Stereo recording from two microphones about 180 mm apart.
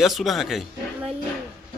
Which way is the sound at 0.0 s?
Centre (ahead or behind).